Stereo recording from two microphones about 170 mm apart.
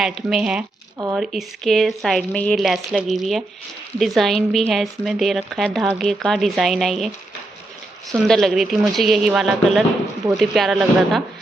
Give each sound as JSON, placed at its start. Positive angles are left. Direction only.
{"t": 0.0, "sound": "speech", "side_deg": -5}
{"t": 8.3, "sound": "speech", "side_deg": 0}